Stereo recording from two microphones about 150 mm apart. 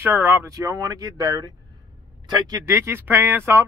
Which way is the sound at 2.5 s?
15° right (ahead or behind).